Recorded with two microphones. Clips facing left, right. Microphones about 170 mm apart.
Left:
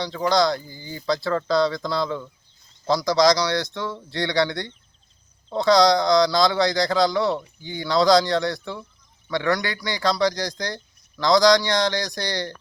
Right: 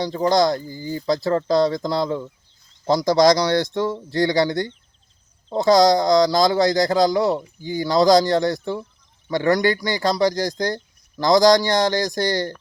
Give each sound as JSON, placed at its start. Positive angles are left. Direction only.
{"t": 0.0, "sound": "speech", "side_deg": -45}